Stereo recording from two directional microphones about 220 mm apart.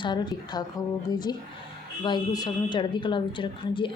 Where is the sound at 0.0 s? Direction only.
20° left (ahead or behind).